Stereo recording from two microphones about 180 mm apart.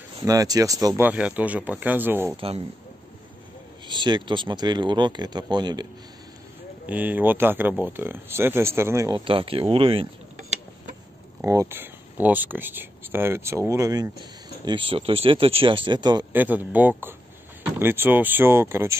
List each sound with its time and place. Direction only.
0.2 s speech: 20° right (ahead or behind)
3.8 s speech: 25° right (ahead or behind)
6.9 s speech: 10° right (ahead or behind)
9.2 s speech: 30° right (ahead or behind)
11.4 s speech: 15° right (ahead or behind)
14.6 s speech: 25° right (ahead or behind)
16.3 s speech: 10° right (ahead or behind)